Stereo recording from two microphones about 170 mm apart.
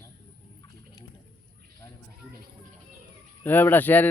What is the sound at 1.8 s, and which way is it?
Speech, 20° left (ahead or behind).